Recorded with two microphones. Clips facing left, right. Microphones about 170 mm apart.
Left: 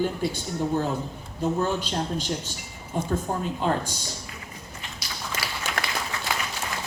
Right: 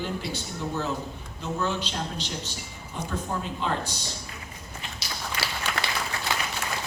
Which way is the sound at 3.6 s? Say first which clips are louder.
Left 4 dB; 45° left (ahead or behind).